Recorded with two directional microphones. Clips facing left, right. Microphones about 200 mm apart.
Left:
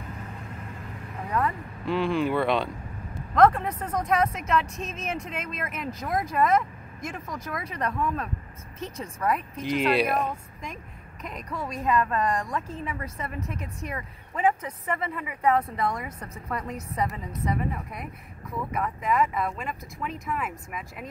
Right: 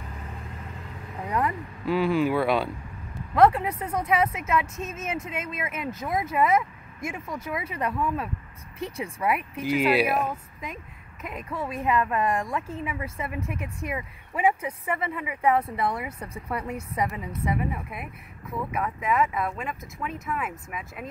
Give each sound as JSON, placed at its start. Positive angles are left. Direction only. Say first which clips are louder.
{"t": 1.3, "sound": "a woman's voice", "louder": "even", "side_deg": -10}